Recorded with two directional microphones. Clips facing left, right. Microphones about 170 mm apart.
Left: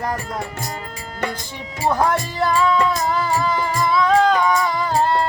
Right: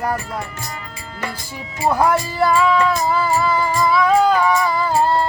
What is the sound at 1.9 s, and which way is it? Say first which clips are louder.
Music: right 2 dB; 10° right (ahead or behind).